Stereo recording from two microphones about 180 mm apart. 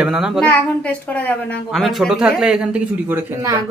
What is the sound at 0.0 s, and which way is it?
Speech, 5° right (ahead or behind).